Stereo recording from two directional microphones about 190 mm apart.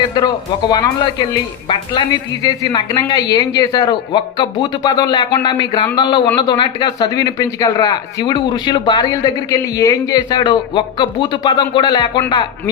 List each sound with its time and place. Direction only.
0.7 s a man's voice: 20° left (ahead or behind)